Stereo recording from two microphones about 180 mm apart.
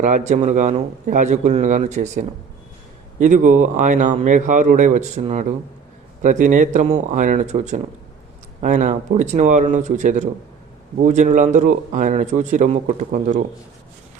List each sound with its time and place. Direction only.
0.0 s a man's voice: 40° right (ahead or behind)